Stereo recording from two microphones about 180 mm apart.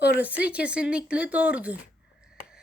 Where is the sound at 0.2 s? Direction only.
10° right (ahead or behind).